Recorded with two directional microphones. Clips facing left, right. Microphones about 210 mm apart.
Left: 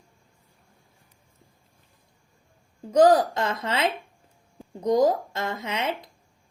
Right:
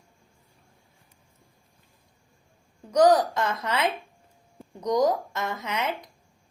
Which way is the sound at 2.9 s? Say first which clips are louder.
Left 2 dB; 25° left (ahead or behind).